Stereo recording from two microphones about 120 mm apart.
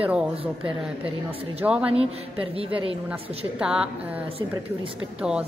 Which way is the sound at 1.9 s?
55° right (ahead or behind).